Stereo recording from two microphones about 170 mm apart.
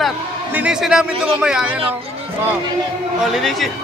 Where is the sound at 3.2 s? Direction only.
Centre (ahead or behind).